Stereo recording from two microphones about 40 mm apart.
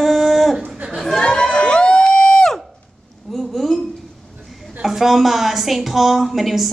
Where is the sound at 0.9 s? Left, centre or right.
Centre.